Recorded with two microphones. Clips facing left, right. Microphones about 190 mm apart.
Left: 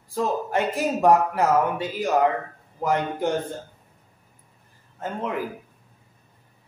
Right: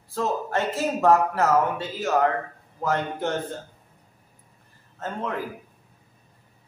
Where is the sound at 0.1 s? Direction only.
15° left (ahead or behind).